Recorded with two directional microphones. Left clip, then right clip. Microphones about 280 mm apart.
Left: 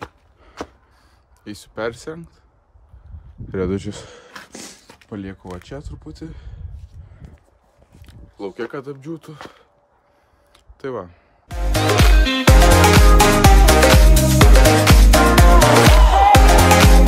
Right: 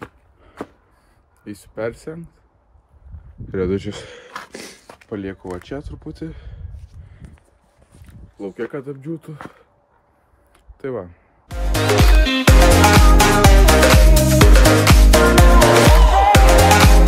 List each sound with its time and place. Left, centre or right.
0.0 s a sound: centre
1.4 s speech: centre
3.4 s speech: left
4.5 s a sound: centre
4.8 s speech: centre
8.4 s speech: centre
10.5 s music: centre